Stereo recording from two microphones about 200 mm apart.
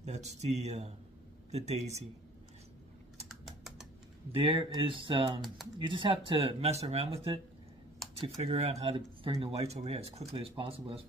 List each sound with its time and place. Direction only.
0.0 s speech: 35° right (ahead or behind)
3.3 s typing: centre (ahead or behind)
4.4 s speech: 25° right (ahead or behind)
8.4 s speech: 30° right (ahead or behind)